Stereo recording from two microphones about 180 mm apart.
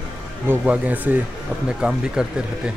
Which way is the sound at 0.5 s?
10° right (ahead or behind).